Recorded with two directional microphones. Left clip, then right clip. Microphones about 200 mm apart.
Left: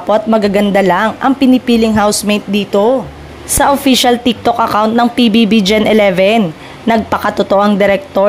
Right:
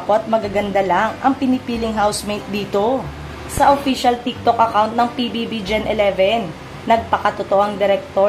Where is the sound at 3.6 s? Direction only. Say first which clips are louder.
Left 4 dB; 50° left (ahead or behind).